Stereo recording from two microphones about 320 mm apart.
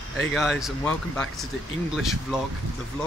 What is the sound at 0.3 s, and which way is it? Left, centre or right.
Speech, centre.